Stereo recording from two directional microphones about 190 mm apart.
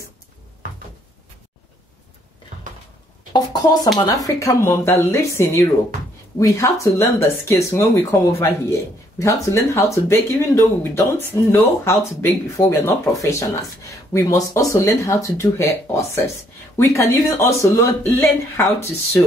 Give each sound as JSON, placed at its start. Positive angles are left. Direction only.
{"t": 3.3, "sound": "speech", "side_deg": 20}